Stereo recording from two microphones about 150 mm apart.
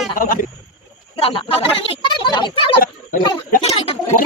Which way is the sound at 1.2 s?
40° left (ahead or behind).